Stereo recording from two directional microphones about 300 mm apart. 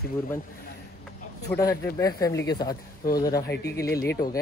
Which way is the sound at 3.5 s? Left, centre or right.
Left.